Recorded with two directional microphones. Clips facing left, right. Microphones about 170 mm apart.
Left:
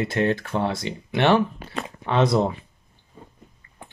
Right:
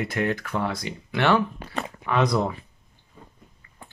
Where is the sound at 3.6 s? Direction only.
30° left (ahead or behind).